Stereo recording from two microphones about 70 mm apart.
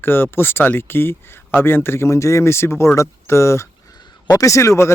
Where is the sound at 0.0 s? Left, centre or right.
Left.